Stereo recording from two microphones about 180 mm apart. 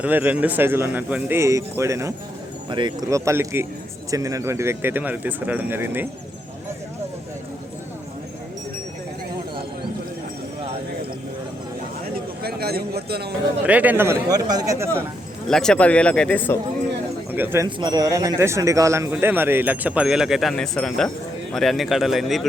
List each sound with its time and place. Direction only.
0.0 s a man's voice: 10° right (ahead or behind)
12.4 s a man's voice: 60° right (ahead or behind)
13.7 s a man's voice: 10° right (ahead or behind)
15.4 s speech: 5° left (ahead or behind)
17.3 s a man's voice: 10° right (ahead or behind)
17.7 s a man's voice: 25° right (ahead or behind); by 22.4 s centre (ahead or behind)